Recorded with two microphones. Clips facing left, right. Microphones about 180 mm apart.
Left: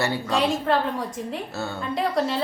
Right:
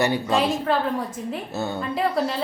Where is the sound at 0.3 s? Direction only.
Centre (ahead or behind).